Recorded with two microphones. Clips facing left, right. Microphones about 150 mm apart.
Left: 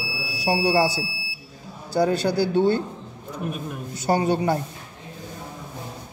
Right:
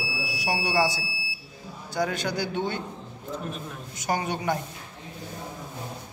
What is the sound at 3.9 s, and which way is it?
Speech, 30° left (ahead or behind).